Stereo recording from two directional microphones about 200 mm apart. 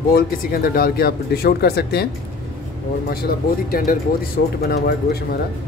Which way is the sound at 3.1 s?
50° left (ahead or behind).